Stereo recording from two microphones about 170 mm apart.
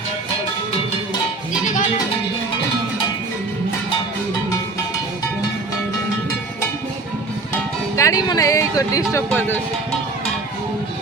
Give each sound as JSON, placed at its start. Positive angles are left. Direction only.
{"t": 1.6, "sound": "music", "side_deg": 45}
{"t": 7.9, "sound": "speech", "side_deg": 20}